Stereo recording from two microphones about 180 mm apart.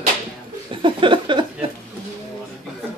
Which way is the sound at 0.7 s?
25° right (ahead or behind).